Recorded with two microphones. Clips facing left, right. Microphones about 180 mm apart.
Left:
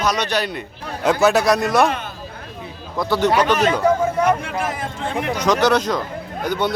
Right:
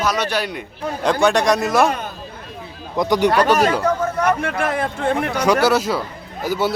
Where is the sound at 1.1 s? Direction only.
5° left (ahead or behind).